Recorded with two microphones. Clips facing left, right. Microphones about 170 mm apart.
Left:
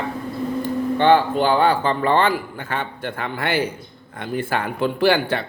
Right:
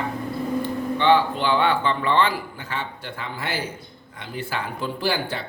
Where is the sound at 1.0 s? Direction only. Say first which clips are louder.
Left 3 dB; 50° left (ahead or behind).